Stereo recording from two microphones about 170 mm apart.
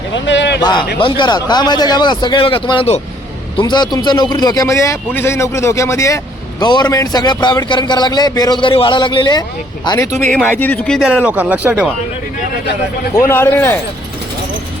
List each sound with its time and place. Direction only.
0.1 s a sound: 90° left
0.6 s a man's voice: 25° left (ahead or behind)
10.2 s a man's voice: 10° left (ahead or behind)
11.3 s speech: 10° right (ahead or behind)
13.2 s a man's voice: 15° left (ahead or behind)